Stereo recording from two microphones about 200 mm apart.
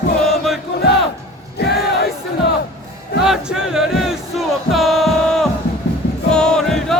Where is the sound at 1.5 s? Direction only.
55° left (ahead or behind).